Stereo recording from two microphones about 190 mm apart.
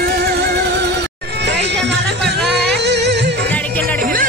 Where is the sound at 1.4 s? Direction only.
65° right (ahead or behind).